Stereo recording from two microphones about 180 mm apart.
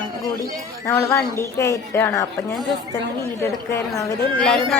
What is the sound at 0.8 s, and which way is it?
A woman's voice, 15° left (ahead or behind).